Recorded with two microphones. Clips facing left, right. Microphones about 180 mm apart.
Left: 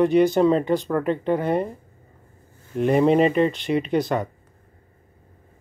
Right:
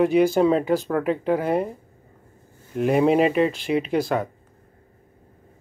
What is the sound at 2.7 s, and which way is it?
Speech, 5° right (ahead or behind).